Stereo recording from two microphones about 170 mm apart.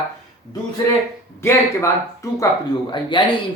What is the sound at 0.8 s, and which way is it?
Speech, 20° left (ahead or behind).